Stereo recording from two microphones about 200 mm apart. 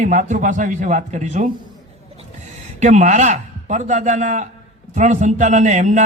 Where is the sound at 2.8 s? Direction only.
35° right (ahead or behind).